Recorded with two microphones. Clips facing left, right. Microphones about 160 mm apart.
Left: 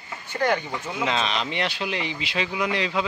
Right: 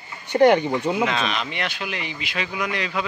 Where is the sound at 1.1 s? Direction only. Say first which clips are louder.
Even; 25° left (ahead or behind).